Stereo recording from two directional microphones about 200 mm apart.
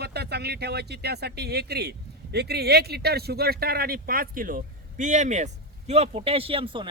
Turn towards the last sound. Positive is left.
turn(degrees=-25)  # may be behind; listen again after turning